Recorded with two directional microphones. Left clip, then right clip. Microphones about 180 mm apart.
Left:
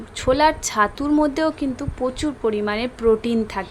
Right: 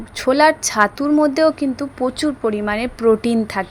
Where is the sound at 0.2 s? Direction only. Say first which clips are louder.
Right 4 dB; 20° right (ahead or behind).